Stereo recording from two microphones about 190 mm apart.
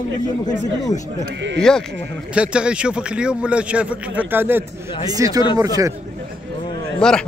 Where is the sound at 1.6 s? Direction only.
5° left (ahead or behind); by 5.9 s 20° right (ahead or behind).